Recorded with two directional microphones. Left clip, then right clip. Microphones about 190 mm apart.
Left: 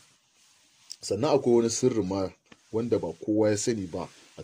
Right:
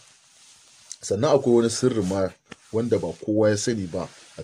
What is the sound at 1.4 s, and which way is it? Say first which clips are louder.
Speech: right 3 dB; 15° left (ahead or behind).